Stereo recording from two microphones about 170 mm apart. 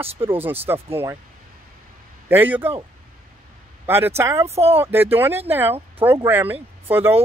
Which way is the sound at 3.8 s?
10° right (ahead or behind).